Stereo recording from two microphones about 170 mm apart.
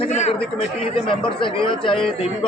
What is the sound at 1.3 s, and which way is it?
Speech, 30° left (ahead or behind).